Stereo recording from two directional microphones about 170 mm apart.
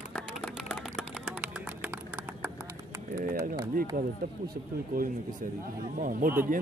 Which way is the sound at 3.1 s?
55° right (ahead or behind).